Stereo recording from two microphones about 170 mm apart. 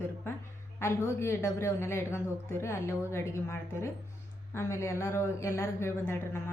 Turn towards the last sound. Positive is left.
turn(degrees=15)  # may be behind; listen again after turning